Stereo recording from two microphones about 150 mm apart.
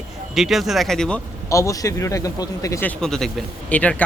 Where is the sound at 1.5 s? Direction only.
20° left (ahead or behind).